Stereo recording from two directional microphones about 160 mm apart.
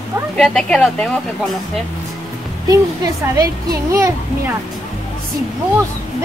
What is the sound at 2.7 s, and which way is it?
Speech, 20° right (ahead or behind).